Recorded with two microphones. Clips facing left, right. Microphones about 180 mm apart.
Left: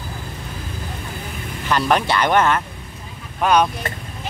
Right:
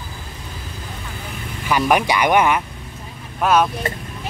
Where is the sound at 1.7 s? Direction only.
10° right (ahead or behind).